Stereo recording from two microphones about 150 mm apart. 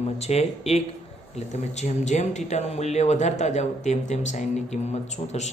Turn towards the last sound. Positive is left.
turn(degrees=50)  # may be behind; listen again after turning